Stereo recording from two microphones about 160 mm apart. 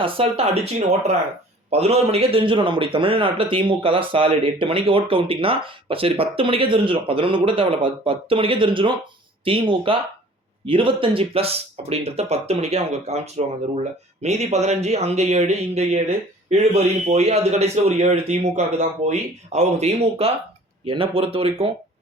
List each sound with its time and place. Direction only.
0.0 s speech: 35° right (ahead or behind)